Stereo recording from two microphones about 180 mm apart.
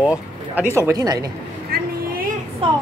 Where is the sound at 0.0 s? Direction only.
5° right (ahead or behind).